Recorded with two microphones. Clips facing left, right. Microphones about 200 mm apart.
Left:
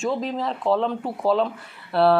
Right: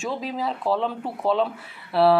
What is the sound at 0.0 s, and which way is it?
Speech, 5° right (ahead or behind).